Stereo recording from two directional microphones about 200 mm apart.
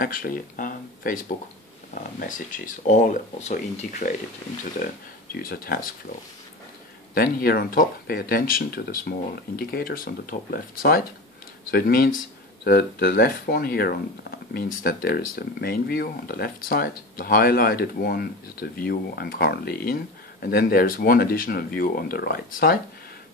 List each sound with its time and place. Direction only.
0.0 s speech: 45° left (ahead or behind)
5.3 s speech: 45° left (ahead or behind)
7.2 s speech: 50° left (ahead or behind)